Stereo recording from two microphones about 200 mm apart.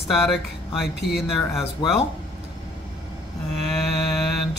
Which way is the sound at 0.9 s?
55° left (ahead or behind).